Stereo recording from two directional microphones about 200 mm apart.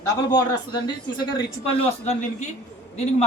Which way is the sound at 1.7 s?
30° left (ahead or behind).